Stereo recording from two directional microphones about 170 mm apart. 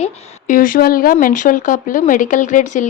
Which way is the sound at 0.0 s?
50° left (ahead or behind).